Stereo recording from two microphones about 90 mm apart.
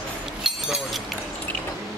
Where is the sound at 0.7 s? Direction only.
Centre (ahead or behind).